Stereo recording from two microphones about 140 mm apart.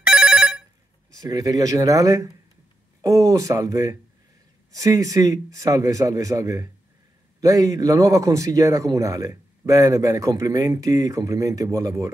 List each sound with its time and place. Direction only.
0.0 s telephone bell ringing: 5° right (ahead or behind)
1.2 s a man's voice: 25° right (ahead or behind)